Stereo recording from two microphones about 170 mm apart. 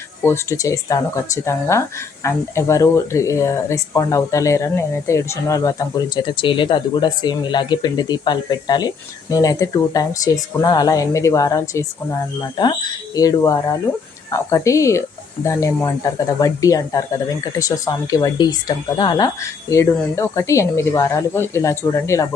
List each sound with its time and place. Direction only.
0.3 s speech: 20° left (ahead or behind)